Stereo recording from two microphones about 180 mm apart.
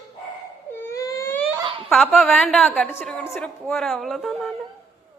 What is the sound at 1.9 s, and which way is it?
A woman's voice, centre (ahead or behind).